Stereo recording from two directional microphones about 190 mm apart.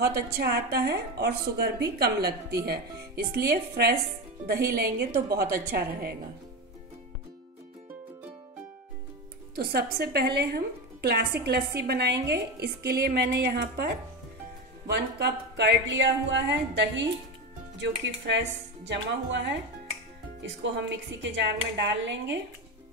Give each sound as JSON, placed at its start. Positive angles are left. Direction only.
{"t": 0.0, "sound": "a woman's voice", "side_deg": -55}
{"t": 9.6, "sound": "a woman's voice", "side_deg": -55}
{"t": 14.9, "sound": "speech", "side_deg": -60}